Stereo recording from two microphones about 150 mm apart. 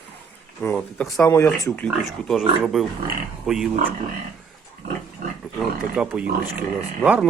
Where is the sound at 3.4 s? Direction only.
5° right (ahead or behind).